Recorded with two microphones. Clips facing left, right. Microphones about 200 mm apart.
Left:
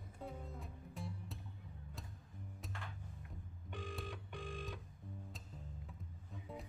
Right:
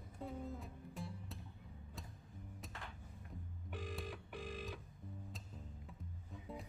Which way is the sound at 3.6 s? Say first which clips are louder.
Even; 5° right (ahead or behind).